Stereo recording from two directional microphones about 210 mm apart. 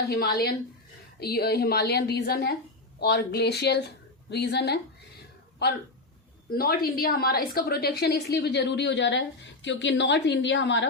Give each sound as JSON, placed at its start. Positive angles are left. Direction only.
{"t": 0.1, "sound": "a woman's voice", "side_deg": 50}